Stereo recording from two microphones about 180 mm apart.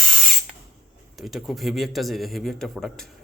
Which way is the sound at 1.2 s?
Centre (ahead or behind).